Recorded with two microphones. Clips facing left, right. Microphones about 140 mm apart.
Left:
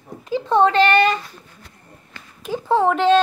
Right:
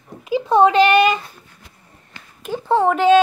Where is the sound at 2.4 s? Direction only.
Centre (ahead or behind).